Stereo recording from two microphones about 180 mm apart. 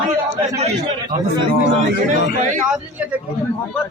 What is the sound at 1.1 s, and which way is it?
A man's voice, 50° right (ahead or behind).